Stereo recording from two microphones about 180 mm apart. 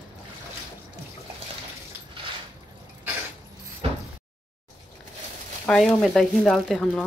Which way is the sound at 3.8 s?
30° right (ahead or behind).